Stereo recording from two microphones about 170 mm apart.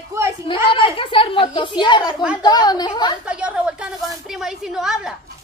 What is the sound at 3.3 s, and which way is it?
A woman's voice, 5° right (ahead or behind).